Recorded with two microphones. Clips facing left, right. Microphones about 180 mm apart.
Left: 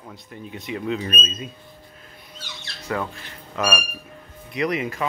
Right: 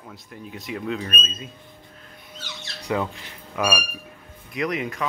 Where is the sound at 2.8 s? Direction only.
15° right (ahead or behind).